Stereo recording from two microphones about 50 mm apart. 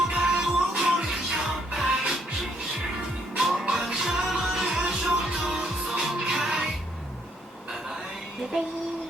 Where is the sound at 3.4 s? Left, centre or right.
Centre.